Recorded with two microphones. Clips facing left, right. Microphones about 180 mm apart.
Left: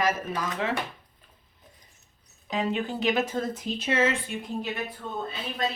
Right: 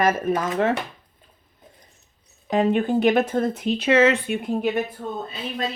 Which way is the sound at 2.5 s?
55° right (ahead or behind).